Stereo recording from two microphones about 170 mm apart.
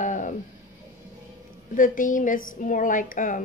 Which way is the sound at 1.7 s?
50° left (ahead or behind).